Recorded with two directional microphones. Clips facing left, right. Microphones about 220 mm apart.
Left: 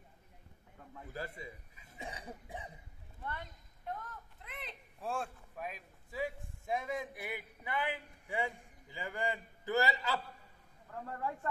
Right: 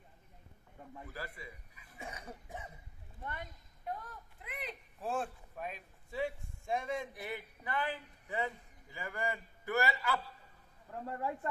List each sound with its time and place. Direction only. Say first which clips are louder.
1.1 s a man's voice: left 5 dB; 25° left (ahead or behind)
3.2 s speech: even; 15° right (ahead or behind)
3.9 s a sound: even; 5° right (ahead or behind)
7.2 s a man's voice: right 1 dB; 10° left (ahead or behind)
11.1 s speech: right 2 dB; 15° right (ahead or behind)